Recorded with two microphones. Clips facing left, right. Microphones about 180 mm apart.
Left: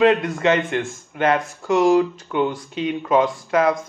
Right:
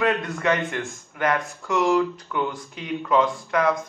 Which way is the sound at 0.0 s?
20° left (ahead or behind).